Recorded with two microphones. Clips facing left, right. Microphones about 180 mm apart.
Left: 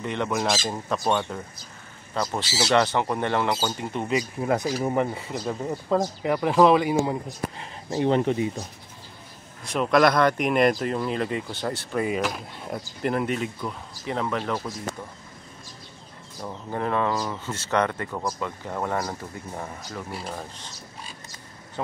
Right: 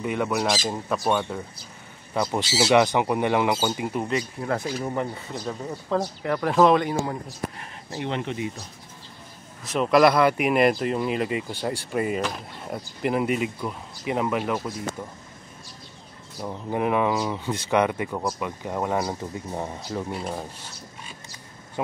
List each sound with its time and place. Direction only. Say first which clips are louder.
0.0 s speech: right 1 dB; 5° right (ahead or behind)
2.1 s speech: right 3 dB; 15° right (ahead or behind)
4.4 s speech: left 3 dB; 15° left (ahead or behind)
5.9 s speech: left 1 dB; 10° left (ahead or behind)
7.1 s speech: left 2 dB; 15° left (ahead or behind)
7.9 s speech: left 7 dB; 35° left (ahead or behind)
9.7 s speech: right 2 dB; centre (ahead or behind)
16.3 s speech: right 3 dB; 10° right (ahead or behind)
20.1 s speech: right 3 dB; 10° right (ahead or behind)
21.8 s speech: right 2 dB; 15° right (ahead or behind)